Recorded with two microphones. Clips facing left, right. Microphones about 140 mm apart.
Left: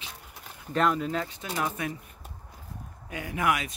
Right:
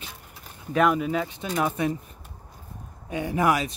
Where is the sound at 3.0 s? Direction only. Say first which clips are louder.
Right 5 dB; 25° right (ahead or behind).